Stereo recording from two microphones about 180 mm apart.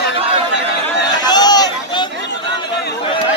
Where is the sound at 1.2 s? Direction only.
20° left (ahead or behind).